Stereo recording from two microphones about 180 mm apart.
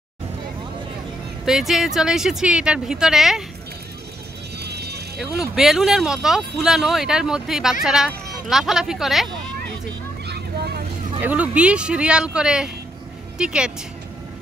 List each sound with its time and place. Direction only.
1.4 s speech: centre (ahead or behind)
4.6 s vehicle: 65° right (ahead or behind)
5.2 s speech: 5° right (ahead or behind)
10.2 s boat: 65° right (ahead or behind)
11.1 s speech: 10° right (ahead or behind)